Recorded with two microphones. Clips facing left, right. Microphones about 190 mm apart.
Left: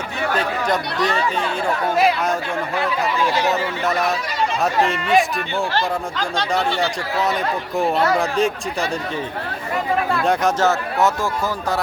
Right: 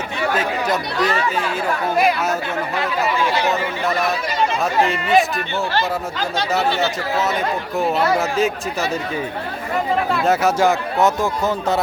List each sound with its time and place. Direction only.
0.3 s speech: 5° right (ahead or behind)
3.0 s speech: centre (ahead or behind)
10.2 s speech: 10° right (ahead or behind)